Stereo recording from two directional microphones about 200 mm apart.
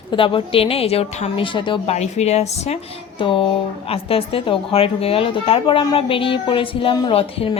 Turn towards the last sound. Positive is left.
turn(degrees=25)  # may be behind; listen again after turning